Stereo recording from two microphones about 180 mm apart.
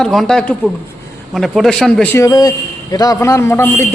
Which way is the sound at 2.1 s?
20° left (ahead or behind).